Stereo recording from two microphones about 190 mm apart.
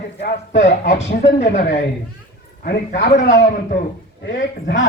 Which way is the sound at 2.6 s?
60° left (ahead or behind).